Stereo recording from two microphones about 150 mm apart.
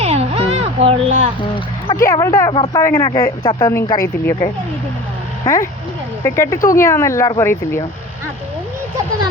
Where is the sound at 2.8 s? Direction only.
20° left (ahead or behind).